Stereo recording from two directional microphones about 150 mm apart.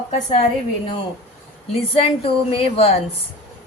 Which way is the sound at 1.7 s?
40° left (ahead or behind).